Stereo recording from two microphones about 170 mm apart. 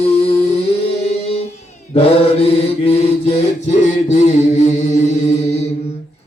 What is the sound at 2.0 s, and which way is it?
Mantra, 35° left (ahead or behind).